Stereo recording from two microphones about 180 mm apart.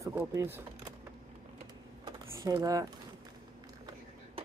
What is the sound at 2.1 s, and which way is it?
Computer keyboard, 20° right (ahead or behind).